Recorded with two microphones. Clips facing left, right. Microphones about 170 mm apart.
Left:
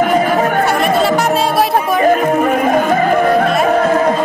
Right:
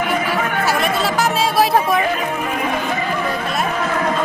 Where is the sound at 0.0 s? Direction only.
40° left (ahead or behind).